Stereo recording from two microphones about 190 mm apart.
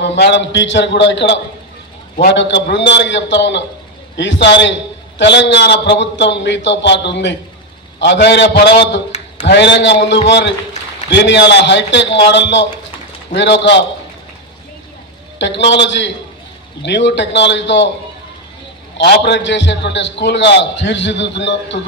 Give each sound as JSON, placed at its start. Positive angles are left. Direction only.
{"t": 0.0, "sound": "a man's voice", "side_deg": 70}
{"t": 15.3, "sound": "a man's voice", "side_deg": 70}
{"t": 18.9, "sound": "a man's voice", "side_deg": 65}